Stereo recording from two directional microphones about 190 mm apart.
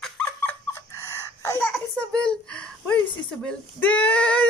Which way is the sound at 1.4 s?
15° left (ahead or behind).